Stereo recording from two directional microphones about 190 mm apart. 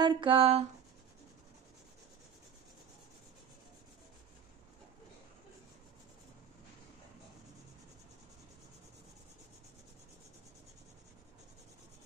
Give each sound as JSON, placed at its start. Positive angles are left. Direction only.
{"t": 0.0, "sound": "speech", "side_deg": -25}